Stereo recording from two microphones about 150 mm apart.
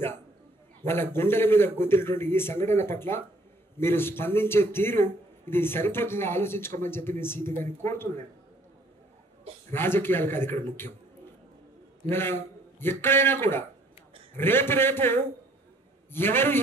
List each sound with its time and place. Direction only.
0.8 s a man's voice: 15° left (ahead or behind)
9.7 s a man's voice: 15° left (ahead or behind)
12.1 s a man's voice: 15° left (ahead or behind)